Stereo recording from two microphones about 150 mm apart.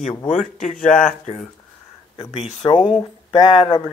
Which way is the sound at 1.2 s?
50° left (ahead or behind).